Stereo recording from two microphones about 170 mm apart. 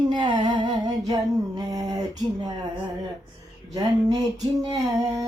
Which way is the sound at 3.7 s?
25° right (ahead or behind).